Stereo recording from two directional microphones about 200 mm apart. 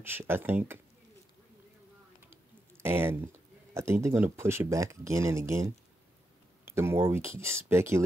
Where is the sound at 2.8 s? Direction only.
10° right (ahead or behind).